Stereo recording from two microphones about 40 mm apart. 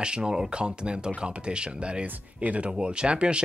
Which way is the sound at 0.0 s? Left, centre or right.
Right.